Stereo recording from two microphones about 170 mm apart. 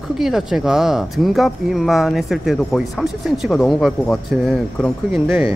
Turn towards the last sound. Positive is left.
turn(degrees=5)  # may be behind; listen again after turning